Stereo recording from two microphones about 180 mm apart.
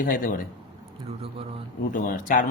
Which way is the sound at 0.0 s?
50° left (ahead or behind).